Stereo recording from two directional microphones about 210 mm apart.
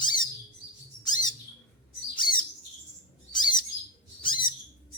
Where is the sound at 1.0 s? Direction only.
20° left (ahead or behind).